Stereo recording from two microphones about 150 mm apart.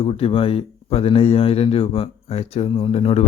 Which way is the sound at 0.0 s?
40° left (ahead or behind).